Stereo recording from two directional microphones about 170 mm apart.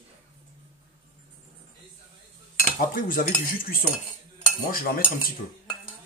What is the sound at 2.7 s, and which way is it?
Cutlery, 55° left (ahead or behind).